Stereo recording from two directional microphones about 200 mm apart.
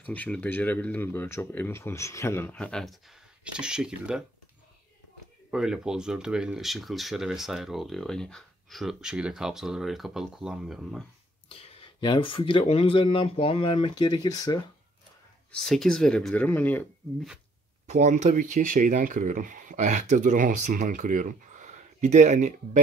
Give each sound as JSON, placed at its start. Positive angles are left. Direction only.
{"t": 0.0, "sound": "speech", "side_deg": 10}
{"t": 5.5, "sound": "speech", "side_deg": 0}
{"t": 11.4, "sound": "speech", "side_deg": 30}
{"t": 15.5, "sound": "speech", "side_deg": 0}
{"t": 17.8, "sound": "speech", "side_deg": -35}